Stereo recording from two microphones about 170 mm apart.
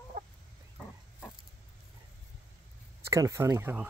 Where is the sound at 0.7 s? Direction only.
5° left (ahead or behind).